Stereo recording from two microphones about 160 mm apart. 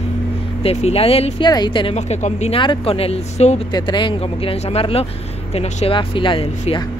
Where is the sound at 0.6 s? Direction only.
40° left (ahead or behind).